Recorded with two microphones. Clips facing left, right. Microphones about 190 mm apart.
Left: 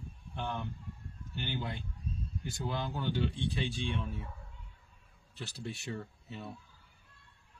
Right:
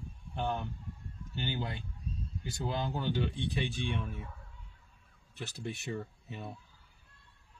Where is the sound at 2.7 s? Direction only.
20° right (ahead or behind).